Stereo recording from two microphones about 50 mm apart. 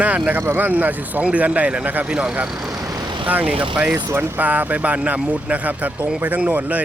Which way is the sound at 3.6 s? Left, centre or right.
Centre.